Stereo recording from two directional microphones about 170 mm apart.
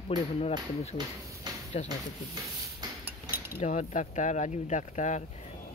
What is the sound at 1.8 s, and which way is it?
Speech, 25° right (ahead or behind).